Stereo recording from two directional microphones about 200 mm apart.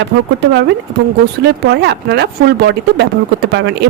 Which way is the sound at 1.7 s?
55° right (ahead or behind).